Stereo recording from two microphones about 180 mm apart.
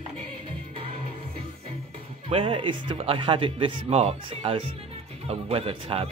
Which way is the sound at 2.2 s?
30° right (ahead or behind).